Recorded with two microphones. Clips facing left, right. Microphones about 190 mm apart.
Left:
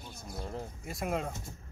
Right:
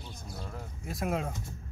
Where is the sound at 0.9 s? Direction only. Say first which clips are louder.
Right 2 dB; centre (ahead or behind).